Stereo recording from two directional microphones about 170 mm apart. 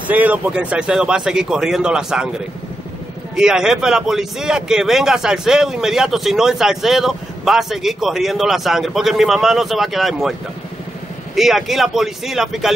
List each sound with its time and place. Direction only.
0.1 s speech: 10° right (ahead or behind)
3.3 s speech: 5° right (ahead or behind)
11.3 s speech: centre (ahead or behind)